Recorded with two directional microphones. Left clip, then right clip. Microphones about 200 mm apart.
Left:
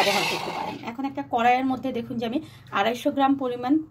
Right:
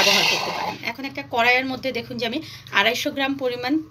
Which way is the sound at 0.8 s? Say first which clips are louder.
Right 2 dB; 40° left (ahead or behind).